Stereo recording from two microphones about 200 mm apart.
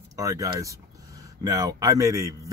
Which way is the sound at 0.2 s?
15° right (ahead or behind).